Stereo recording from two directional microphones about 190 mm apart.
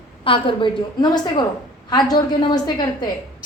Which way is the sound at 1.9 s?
20° left (ahead or behind).